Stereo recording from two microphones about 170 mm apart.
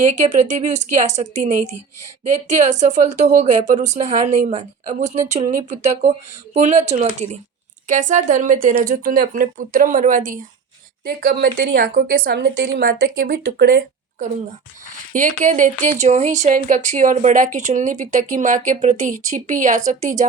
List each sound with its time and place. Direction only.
0.0 s speech: 45° right (ahead or behind)
11.0 s a woman's voice: 60° right (ahead or behind)
15.1 s speech: 50° right (ahead or behind)